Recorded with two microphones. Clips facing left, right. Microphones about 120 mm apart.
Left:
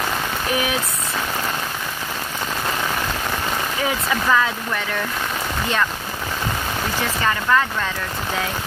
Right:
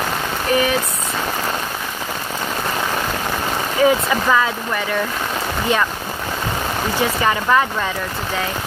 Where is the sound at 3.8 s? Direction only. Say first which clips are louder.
Right 7 dB; 5° right (ahead or behind).